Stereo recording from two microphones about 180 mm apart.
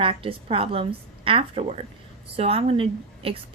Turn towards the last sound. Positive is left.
turn(degrees=-30)  # may be behind; listen again after turning